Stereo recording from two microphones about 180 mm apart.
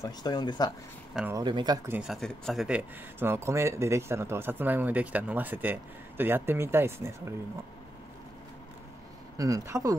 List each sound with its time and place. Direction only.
0.0 s speech: 20° left (ahead or behind)
1.3 s speech: 25° right (ahead or behind)
1.9 s speech: 5° right (ahead or behind)
3.2 s speech: 15° right (ahead or behind)
9.4 s speech: 20° right (ahead or behind)